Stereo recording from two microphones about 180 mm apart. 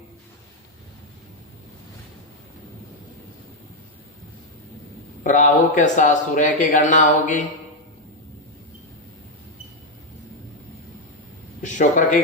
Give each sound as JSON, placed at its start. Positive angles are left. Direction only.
{"t": 5.2, "sound": "speech", "side_deg": 45}
{"t": 11.6, "sound": "speech", "side_deg": 45}